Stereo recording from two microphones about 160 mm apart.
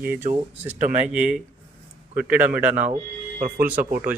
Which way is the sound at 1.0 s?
10° right (ahead or behind).